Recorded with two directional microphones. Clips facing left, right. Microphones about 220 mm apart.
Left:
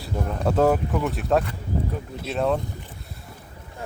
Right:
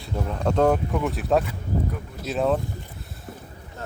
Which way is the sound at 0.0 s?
5° left (ahead or behind).